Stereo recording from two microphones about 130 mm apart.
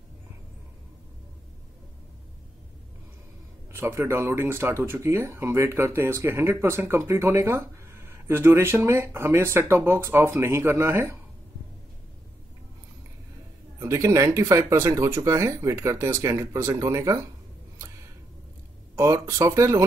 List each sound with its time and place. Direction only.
3.7 s speech: 20° right (ahead or behind)
13.7 s speech: 20° right (ahead or behind)
18.9 s speech: 25° right (ahead or behind)